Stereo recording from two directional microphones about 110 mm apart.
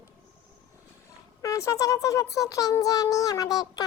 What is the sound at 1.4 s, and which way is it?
A child's voice, 30° left (ahead or behind).